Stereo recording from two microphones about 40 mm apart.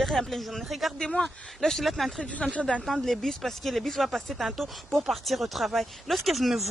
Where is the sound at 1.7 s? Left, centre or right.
Centre.